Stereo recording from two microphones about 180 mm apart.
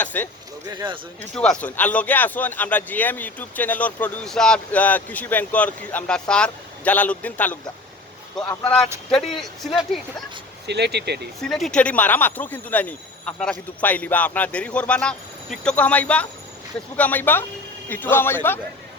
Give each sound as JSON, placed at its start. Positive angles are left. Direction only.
{"t": 0.0, "sound": "speech", "side_deg": 10}
{"t": 1.4, "sound": "speech", "side_deg": 5}
{"t": 8.6, "sound": "speech", "side_deg": 5}
{"t": 10.7, "sound": "speech", "side_deg": -70}
{"t": 11.3, "sound": "speech", "side_deg": 0}